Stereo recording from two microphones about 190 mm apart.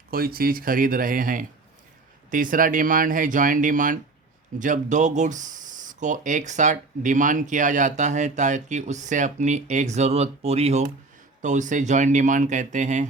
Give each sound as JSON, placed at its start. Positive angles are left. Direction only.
{"t": 0.1, "sound": "speech", "side_deg": -50}